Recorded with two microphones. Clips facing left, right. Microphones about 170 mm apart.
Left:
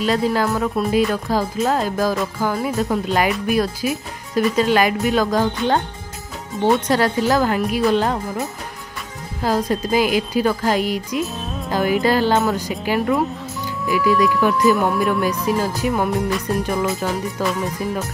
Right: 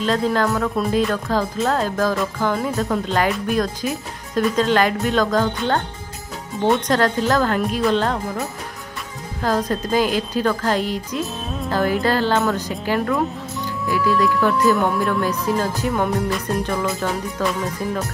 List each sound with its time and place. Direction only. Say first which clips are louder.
0.0 s speech: left 1 dB; 10° left (ahead or behind)